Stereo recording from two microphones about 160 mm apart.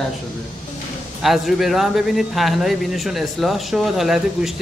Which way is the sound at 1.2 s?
Centre (ahead or behind).